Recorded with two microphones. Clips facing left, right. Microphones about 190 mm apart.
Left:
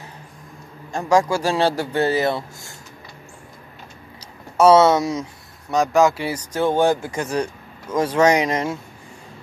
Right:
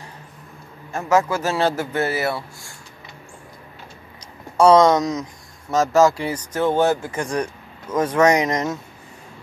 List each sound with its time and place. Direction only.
0.9 s speech: 15° left (ahead or behind)
4.6 s speech: 5° left (ahead or behind)
5.7 s a man's voice: centre (ahead or behind)
6.2 s speech: 10° left (ahead or behind)